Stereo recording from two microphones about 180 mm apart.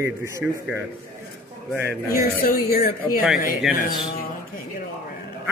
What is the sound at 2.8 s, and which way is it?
Speech, 50° left (ahead or behind).